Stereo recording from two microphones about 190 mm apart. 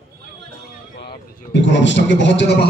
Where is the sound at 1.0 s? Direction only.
65° left (ahead or behind).